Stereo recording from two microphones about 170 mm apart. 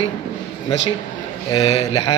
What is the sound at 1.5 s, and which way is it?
Speech, 30° left (ahead or behind).